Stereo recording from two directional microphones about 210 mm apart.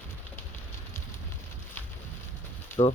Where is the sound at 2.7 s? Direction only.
10° left (ahead or behind).